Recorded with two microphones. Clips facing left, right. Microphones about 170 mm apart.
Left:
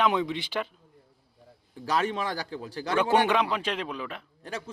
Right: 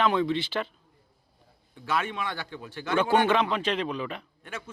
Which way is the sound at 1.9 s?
35° left (ahead or behind).